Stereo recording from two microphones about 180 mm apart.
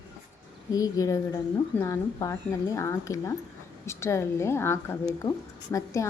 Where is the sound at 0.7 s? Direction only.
20° left (ahead or behind).